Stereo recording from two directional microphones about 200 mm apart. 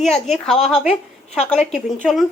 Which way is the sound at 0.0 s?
Centre (ahead or behind).